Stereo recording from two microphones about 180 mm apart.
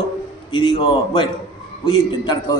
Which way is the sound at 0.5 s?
30° left (ahead or behind).